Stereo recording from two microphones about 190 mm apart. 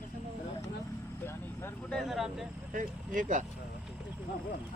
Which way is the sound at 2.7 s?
45° right (ahead or behind).